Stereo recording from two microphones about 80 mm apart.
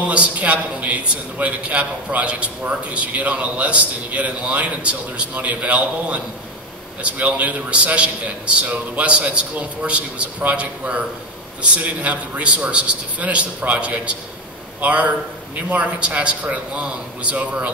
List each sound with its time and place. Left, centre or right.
0.0 s a man's voice: centre